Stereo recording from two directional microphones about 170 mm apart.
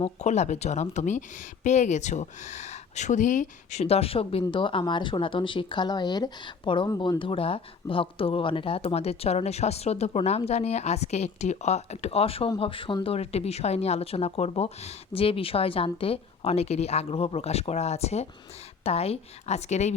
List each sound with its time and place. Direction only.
0.0 s speech: 40° left (ahead or behind)